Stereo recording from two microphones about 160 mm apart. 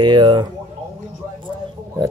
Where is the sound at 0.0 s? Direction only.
30° right (ahead or behind).